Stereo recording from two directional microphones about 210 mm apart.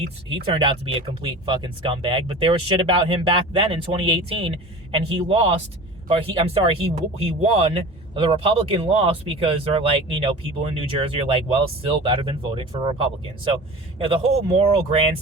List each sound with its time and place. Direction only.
0.3 s speech: 25° right (ahead or behind)